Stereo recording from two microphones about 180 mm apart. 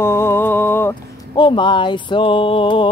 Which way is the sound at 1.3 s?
25° left (ahead or behind).